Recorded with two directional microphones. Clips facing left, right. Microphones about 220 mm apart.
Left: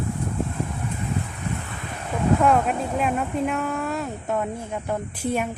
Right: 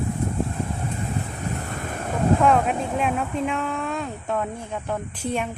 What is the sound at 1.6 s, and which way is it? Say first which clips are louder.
Waves: right 4 dB; 45° right (ahead or behind).